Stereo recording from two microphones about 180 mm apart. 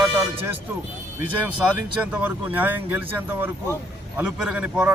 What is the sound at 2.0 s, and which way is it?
A man's voice, 10° right (ahead or behind).